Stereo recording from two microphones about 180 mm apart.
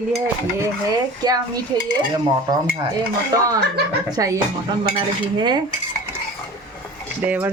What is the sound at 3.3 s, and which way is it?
Speech, 20° right (ahead or behind).